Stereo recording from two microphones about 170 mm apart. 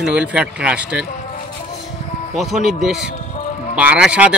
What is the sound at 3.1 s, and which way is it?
Music, 45° left (ahead or behind).